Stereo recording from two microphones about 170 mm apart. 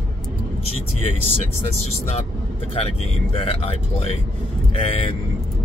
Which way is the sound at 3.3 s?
35° left (ahead or behind).